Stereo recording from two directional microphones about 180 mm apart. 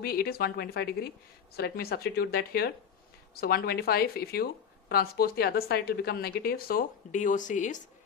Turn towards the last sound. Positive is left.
turn(degrees=45)  # may be behind; listen again after turning